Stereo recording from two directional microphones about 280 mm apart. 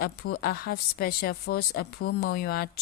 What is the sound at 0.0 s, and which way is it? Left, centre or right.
Speech, left.